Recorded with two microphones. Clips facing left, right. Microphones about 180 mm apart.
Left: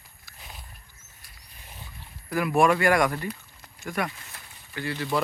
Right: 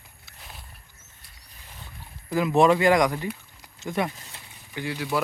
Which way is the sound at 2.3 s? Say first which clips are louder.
Right 2 dB; 20° right (ahead or behind).